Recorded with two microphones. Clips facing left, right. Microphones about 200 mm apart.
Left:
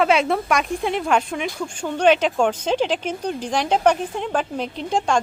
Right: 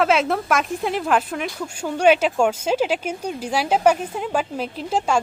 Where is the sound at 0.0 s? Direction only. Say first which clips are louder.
Left 1 dB; centre (ahead or behind).